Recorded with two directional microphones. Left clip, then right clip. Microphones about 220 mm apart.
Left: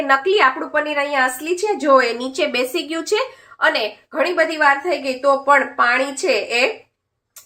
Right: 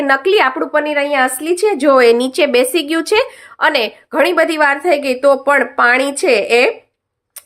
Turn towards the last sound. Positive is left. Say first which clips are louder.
# right 6 dB
turn(degrees=-55)  # may be behind; listen again after turning